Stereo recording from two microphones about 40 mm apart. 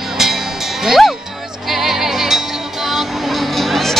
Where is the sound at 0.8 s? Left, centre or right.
Centre.